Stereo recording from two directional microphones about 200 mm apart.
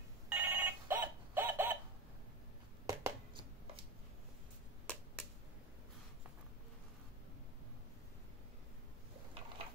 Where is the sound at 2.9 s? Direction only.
15° right (ahead or behind).